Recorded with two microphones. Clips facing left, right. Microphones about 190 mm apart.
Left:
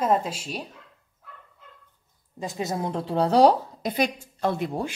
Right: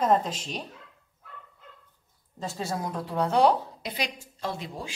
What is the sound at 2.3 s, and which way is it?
A woman's voice, 15° left (ahead or behind).